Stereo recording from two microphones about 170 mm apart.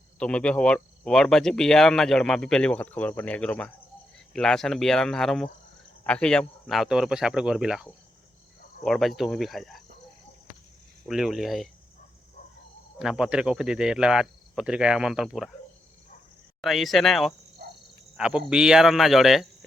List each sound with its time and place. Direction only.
0.2 s speech: 5° left (ahead or behind)
11.1 s speech: centre (ahead or behind)
13.0 s speech: 5° right (ahead or behind)
16.6 s speech: centre (ahead or behind)